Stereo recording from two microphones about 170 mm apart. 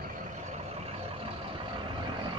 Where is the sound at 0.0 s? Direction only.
40° right (ahead or behind).